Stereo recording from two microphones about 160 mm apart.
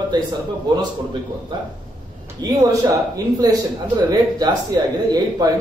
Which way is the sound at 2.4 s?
25° right (ahead or behind).